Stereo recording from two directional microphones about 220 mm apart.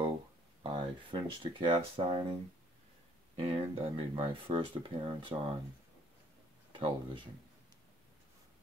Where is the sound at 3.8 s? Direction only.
25° right (ahead or behind).